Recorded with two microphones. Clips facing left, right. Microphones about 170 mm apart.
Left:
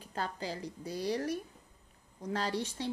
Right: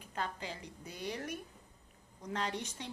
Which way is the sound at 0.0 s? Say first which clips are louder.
Left 3 dB; 35° left (ahead or behind).